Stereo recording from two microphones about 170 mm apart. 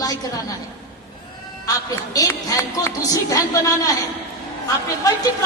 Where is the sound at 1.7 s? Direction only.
20° left (ahead or behind).